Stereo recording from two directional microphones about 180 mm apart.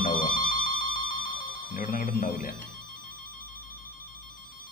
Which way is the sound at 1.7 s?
55° left (ahead or behind).